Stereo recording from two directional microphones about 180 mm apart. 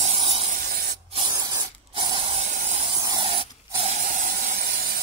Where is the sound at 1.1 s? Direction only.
25° right (ahead or behind).